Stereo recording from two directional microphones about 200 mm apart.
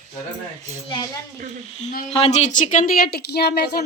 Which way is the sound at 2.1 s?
30° left (ahead or behind).